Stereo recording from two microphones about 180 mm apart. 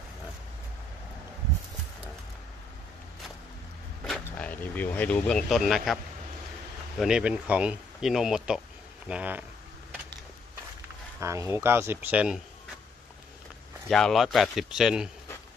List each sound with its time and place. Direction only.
4.0 s vehicle: 5° left (ahead or behind)
7.0 s speech: 5° right (ahead or behind)
11.1 s speech: 15° right (ahead or behind)
13.8 s speech: centre (ahead or behind)